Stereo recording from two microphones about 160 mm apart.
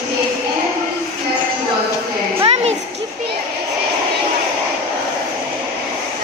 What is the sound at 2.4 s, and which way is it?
Children playing, 40° right (ahead or behind).